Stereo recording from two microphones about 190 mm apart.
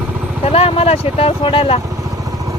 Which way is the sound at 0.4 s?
30° left (ahead or behind).